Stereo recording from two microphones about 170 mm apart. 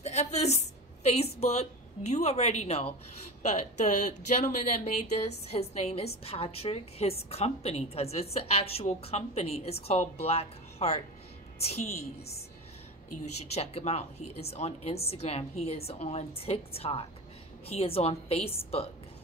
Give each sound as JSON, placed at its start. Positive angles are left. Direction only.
{"t": 0.0, "sound": "a woman's voice", "side_deg": 40}